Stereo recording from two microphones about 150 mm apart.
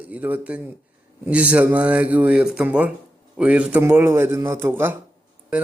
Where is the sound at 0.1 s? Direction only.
10° right (ahead or behind).